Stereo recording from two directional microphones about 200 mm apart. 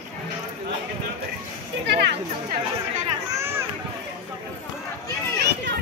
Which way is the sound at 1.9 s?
55° right (ahead or behind).